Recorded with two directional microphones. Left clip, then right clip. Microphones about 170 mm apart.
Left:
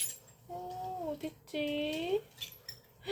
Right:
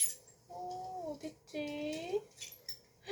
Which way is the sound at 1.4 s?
40° left (ahead or behind).